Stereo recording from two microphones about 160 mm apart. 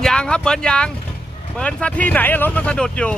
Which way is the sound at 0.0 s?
5° left (ahead or behind).